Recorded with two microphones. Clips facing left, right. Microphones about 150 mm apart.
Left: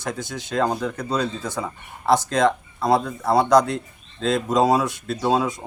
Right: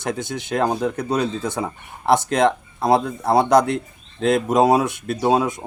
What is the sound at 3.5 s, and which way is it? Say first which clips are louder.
Speech: right 1 dB; 55° right (ahead or behind).